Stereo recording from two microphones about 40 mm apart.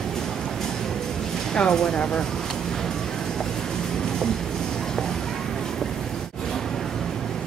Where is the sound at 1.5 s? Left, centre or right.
Left.